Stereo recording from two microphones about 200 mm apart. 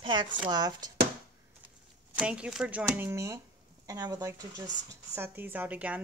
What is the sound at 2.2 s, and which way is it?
A woman's voice, 5° right (ahead or behind).